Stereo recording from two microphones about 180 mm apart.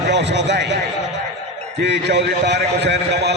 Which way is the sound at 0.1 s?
75° right (ahead or behind).